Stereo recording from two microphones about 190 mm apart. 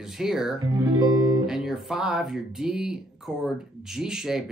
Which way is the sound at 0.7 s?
20° right (ahead or behind).